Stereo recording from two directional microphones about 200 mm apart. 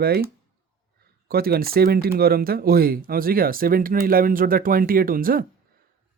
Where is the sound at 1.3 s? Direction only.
50° right (ahead or behind).